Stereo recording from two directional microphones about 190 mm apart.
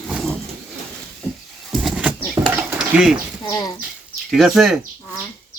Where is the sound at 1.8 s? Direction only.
5° right (ahead or behind).